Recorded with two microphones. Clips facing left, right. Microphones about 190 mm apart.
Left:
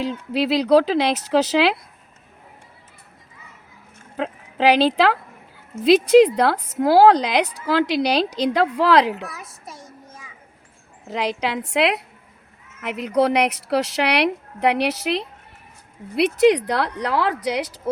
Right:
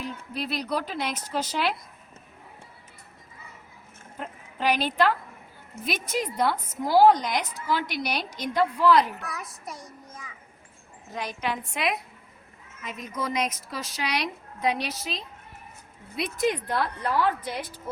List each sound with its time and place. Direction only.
0.0 s speech: 90° left
4.2 s speech: 90° left
5.8 s a woman's voice: 75° left (ahead or behind)
9.2 s a woman's voice: 25° left (ahead or behind)
11.1 s a woman's voice: 75° left (ahead or behind)